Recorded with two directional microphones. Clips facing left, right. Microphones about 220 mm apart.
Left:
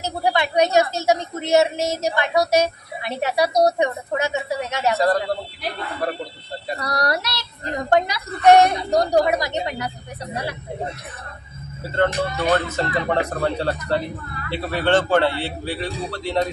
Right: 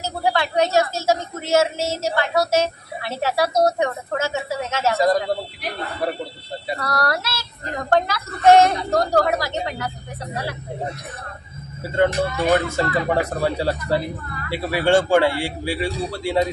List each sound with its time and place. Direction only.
0.0 s a woman's voice: 20° left (ahead or behind)
4.9 s a man's voice: 10° right (ahead or behind)
6.8 s a woman's voice: 20° left (ahead or behind)
12.5 s a man's voice: 10° right (ahead or behind)